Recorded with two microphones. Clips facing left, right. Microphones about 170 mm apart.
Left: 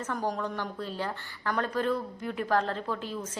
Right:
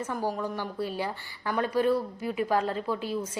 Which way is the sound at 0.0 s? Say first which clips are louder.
Right 1 dB; 10° right (ahead or behind).